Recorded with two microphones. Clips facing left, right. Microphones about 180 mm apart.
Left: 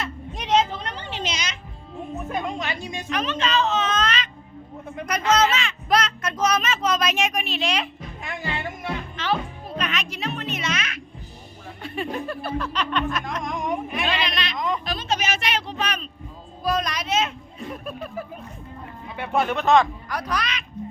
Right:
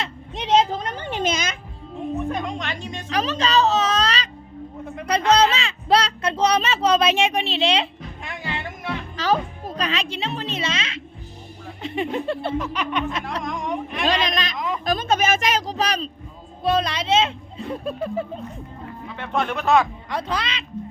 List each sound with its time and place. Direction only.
0.0 s a sound: 25° right (ahead or behind); by 1.5 s 50° right (ahead or behind)
2.3 s music: 5° left (ahead or behind)
3.1 s speech: 35° right (ahead or behind)
5.3 s speech: 35° right (ahead or behind)
9.1 s music: 40° right (ahead or behind)
11.8 s a child's voice: 20° right (ahead or behind)
13.4 s a sound: 5° left (ahead or behind)
14.0 s speech: 40° right (ahead or behind)
14.5 s music: 5° right (ahead or behind)
14.8 s a child's voice: 50° right (ahead or behind); by 18.3 s 25° right (ahead or behind)
19.0 s speech: 10° left (ahead or behind)
20.1 s a child's voice: 25° right (ahead or behind)